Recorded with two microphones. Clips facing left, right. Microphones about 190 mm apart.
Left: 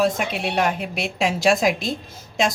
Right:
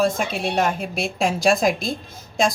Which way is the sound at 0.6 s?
45° right (ahead or behind).